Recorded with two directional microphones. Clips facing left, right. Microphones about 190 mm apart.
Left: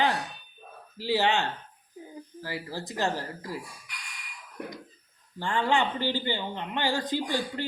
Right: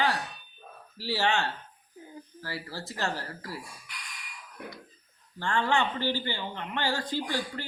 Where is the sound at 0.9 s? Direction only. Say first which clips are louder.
Left 3 dB; 15° left (ahead or behind).